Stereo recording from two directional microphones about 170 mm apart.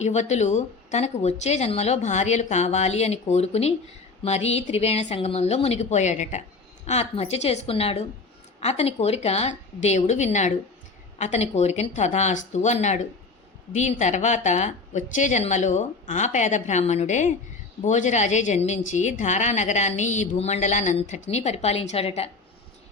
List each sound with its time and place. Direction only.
0.0 s a woman's voice: 45° left (ahead or behind)